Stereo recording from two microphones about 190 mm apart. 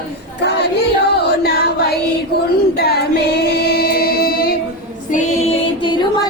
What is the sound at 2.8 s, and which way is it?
Singing, 55° left (ahead or behind).